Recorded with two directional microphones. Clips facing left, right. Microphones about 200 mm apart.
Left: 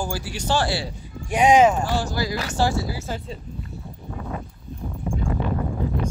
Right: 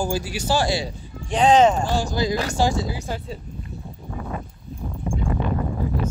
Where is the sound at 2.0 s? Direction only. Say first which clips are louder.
Right 3 dB; 20° right (ahead or behind).